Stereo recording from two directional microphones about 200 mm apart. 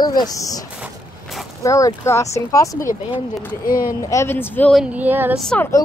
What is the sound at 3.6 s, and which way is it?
Speech, 45° left (ahead or behind).